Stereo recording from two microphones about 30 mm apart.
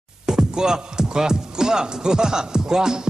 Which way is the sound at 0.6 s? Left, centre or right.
Right.